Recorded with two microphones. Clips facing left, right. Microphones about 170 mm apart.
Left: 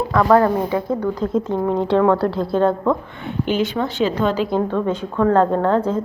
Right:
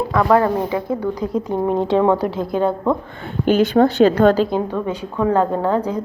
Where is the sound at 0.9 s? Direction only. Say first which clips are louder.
Left 1 dB; 10° right (ahead or behind).